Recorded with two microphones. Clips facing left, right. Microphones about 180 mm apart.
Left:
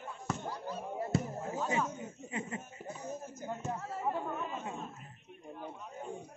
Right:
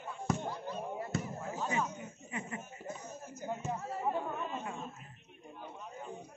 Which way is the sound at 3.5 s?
10° right (ahead or behind).